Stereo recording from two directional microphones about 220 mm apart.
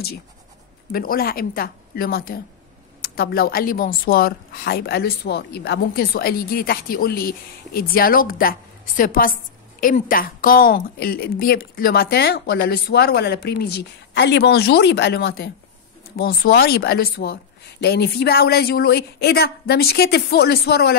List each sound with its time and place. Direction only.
0.9 s a woman's voice: 40° left (ahead or behind)